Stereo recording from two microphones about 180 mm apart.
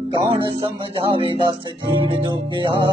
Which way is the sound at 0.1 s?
30° right (ahead or behind).